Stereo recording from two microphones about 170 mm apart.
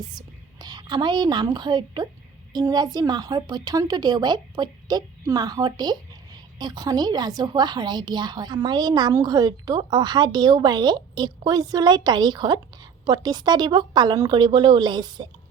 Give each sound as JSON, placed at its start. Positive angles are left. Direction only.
{"t": 0.0, "sound": "a woman's voice", "side_deg": -25}